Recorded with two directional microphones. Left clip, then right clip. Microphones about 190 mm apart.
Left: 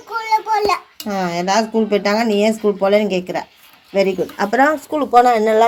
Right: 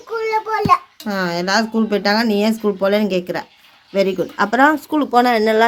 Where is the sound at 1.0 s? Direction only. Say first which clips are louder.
Left 1 dB; 10° right (ahead or behind).